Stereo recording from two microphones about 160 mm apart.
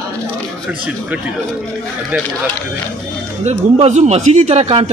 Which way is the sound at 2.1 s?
10° right (ahead or behind).